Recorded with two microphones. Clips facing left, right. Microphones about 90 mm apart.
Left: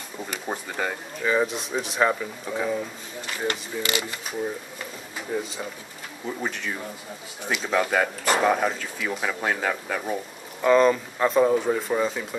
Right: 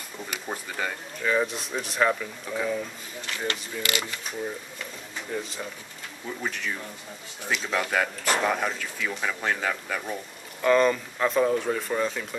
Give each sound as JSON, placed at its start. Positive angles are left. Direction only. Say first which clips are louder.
{"t": 0.5, "sound": "speech", "louder": "left 3 dB", "side_deg": 20}
{"t": 1.2, "sound": "speech", "louder": "left 2 dB", "side_deg": 5}
{"t": 5.3, "sound": "speech", "louder": "left 4 dB", "side_deg": 5}
{"t": 7.5, "sound": "speech", "louder": "left 3 dB", "side_deg": 5}